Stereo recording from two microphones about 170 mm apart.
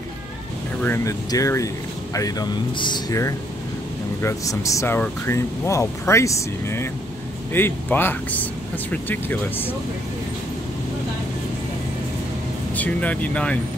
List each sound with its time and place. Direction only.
0.8 s speech: 15° left (ahead or behind)
12.7 s speech: 10° left (ahead or behind)